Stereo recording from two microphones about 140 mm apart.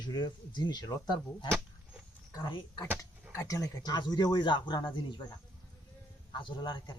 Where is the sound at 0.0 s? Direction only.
30° left (ahead or behind).